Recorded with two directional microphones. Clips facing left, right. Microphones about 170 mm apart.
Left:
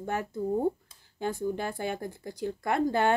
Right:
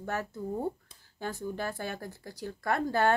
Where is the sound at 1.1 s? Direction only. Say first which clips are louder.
Left 5 dB; 15° left (ahead or behind).